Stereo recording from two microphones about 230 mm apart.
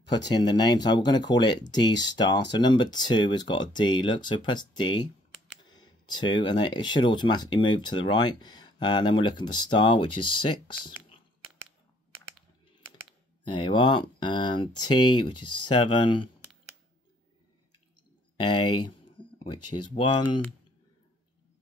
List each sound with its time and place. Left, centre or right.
0.1 s speech: centre
13.5 s speech: centre
15.3 s speech: left
15.6 s speech: centre
18.4 s speech: centre
18.8 s a sound: left
19.6 s speech: left
20.0 s speech: centre